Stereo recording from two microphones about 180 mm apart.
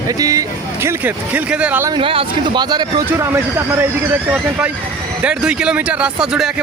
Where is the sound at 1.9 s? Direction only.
30° right (ahead or behind).